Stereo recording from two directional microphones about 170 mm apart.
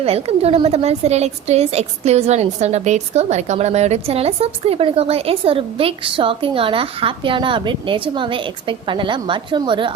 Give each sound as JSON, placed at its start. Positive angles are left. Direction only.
{"t": 0.0, "sound": "a woman's voice", "side_deg": -35}